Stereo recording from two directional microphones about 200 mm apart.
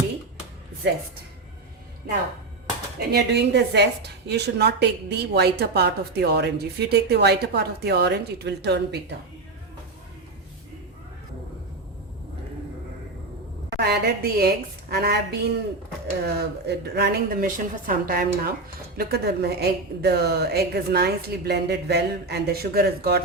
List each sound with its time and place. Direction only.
3.1 s a woman's voice: 55° right (ahead or behind)
13.7 s a woman's voice: 55° right (ahead or behind)